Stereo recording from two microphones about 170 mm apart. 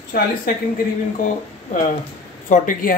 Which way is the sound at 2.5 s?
50° left (ahead or behind).